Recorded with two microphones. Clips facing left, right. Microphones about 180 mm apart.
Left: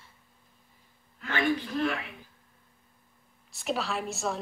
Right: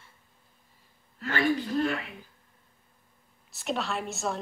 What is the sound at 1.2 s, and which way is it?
Speech, 40° right (ahead or behind).